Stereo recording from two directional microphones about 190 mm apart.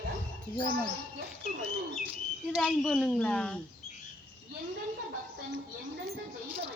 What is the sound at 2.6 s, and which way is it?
Speech, centre (ahead or behind).